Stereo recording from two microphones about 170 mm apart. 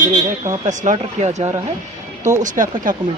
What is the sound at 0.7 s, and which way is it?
Speech, 45° right (ahead or behind).